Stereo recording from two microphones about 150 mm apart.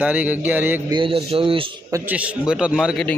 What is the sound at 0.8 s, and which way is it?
Speech, 35° right (ahead or behind).